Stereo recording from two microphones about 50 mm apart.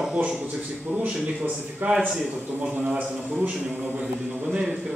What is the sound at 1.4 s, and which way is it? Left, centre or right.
Speech, right.